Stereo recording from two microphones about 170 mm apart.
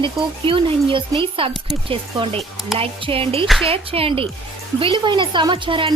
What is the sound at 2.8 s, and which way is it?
Speech, 30° right (ahead or behind).